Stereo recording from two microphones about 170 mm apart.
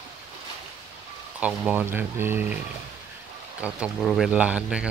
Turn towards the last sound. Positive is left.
turn(degrees=-5)  # may be behind; listen again after turning